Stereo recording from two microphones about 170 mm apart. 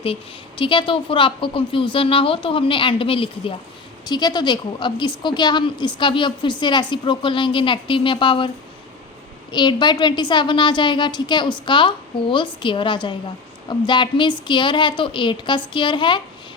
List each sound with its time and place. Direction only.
0.0 s a woman's voice: 30° left (ahead or behind)
9.5 s a woman's voice: 25° left (ahead or behind)